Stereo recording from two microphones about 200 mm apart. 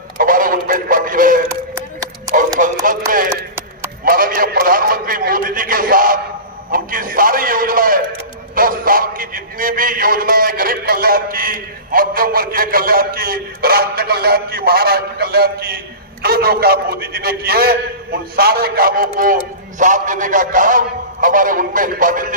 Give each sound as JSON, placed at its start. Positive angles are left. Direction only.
{"t": 0.2, "sound": "synthetic singing", "side_deg": -45}
{"t": 1.7, "sound": "clapping", "side_deg": -15}
{"t": 2.6, "sound": "music", "side_deg": -40}
{"t": 4.0, "sound": "a man's voice", "side_deg": -45}